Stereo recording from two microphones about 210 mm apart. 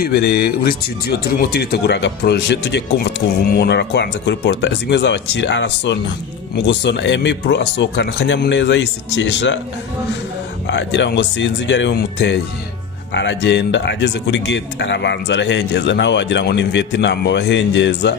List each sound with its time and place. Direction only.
0.0 s a man's voice: 50° left (ahead or behind)
10.7 s a man's voice: 55° left (ahead or behind)